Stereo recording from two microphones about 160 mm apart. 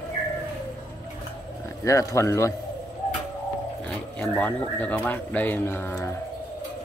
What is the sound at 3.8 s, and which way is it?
Speech, 5° left (ahead or behind).